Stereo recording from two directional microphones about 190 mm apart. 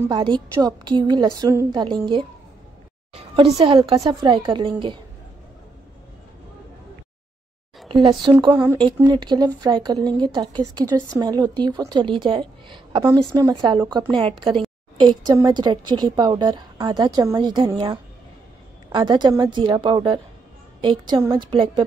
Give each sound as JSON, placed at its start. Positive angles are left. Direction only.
{"t": 0.1, "sound": "a woman's voice", "side_deg": -25}
{"t": 7.9, "sound": "speech", "side_deg": -25}
{"t": 8.5, "sound": "speech", "side_deg": -10}
{"t": 8.7, "sound": "speech", "side_deg": -25}